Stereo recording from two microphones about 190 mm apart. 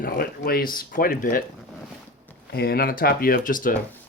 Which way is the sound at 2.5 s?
55° left (ahead or behind).